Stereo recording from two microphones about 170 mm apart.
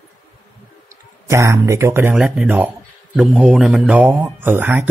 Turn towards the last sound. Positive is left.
turn(degrees=-10)  # may be behind; listen again after turning